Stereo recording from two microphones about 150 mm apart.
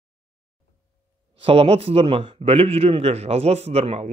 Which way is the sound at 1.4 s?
40° right (ahead or behind).